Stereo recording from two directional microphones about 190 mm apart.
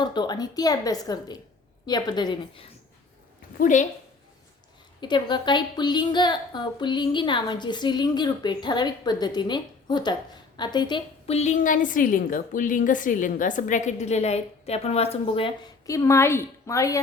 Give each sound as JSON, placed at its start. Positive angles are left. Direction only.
{"t": 0.0, "sound": "speech", "side_deg": 25}
{"t": 3.6, "sound": "a woman's voice", "side_deg": 40}
{"t": 4.9, "sound": "a woman's voice", "side_deg": 25}
{"t": 15.9, "sound": "a woman's voice", "side_deg": 15}